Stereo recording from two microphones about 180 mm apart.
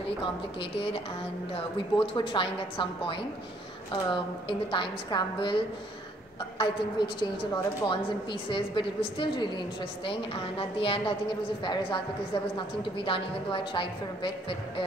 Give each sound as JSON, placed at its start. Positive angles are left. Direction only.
{"t": 0.2, "sound": "a woman's voice", "side_deg": 30}
{"t": 6.6, "sound": "a woman's voice", "side_deg": 25}